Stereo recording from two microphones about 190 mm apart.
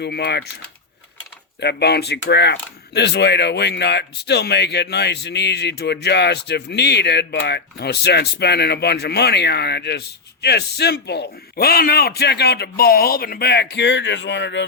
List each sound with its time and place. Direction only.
0.0 s speech: 60° left (ahead or behind)
1.6 s speech: 60° left (ahead or behind)